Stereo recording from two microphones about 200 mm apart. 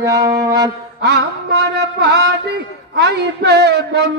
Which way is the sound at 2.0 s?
55° right (ahead or behind).